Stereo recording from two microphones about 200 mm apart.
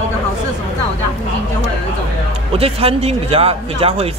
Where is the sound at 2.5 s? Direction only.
30° right (ahead or behind).